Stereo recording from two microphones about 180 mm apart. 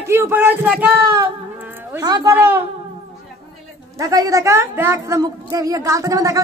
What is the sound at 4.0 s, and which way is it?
A woman's voice, 20° right (ahead or behind).